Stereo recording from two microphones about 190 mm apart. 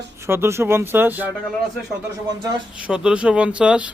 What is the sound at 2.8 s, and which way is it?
Speech, 5° right (ahead or behind).